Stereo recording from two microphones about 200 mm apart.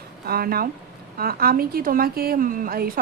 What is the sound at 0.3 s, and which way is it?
A woman's voice, 50° right (ahead or behind).